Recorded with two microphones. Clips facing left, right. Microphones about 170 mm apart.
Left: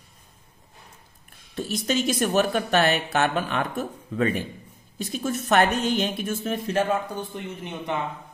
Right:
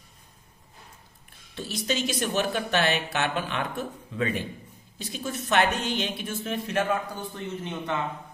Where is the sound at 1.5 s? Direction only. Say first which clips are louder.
Left 4 dB; 45° left (ahead or behind).